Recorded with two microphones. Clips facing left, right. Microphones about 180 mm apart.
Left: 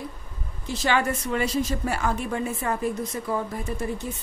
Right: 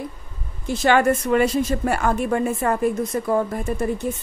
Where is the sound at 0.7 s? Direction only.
55° right (ahead or behind).